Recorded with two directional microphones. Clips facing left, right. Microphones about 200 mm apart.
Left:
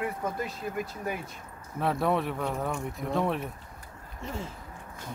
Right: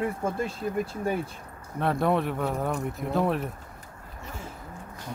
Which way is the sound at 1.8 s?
Centre (ahead or behind).